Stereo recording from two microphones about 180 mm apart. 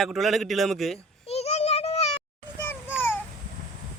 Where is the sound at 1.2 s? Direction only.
35° left (ahead or behind).